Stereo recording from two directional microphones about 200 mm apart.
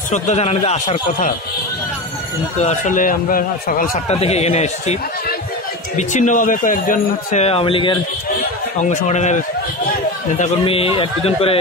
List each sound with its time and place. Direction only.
0.1 s speech: 35° left (ahead or behind)
2.6 s a man's voice: 35° left (ahead or behind)
4.1 s speech: 30° left (ahead or behind)
5.9 s speech: 35° left (ahead or behind)
9.0 s a man's voice: 35° left (ahead or behind)